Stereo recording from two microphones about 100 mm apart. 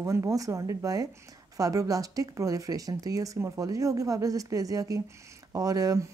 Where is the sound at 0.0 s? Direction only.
30° right (ahead or behind).